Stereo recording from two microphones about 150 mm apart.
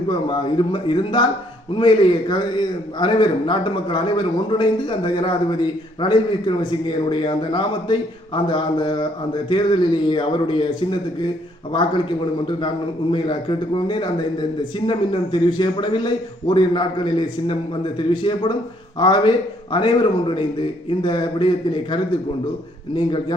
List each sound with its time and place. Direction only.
0.1 s a man's voice: 30° left (ahead or behind)
12.6 s a man's voice: 30° left (ahead or behind)